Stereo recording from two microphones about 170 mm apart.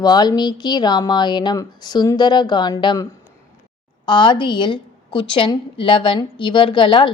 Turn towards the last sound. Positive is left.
turn(degrees=30)  # may be behind; listen again after turning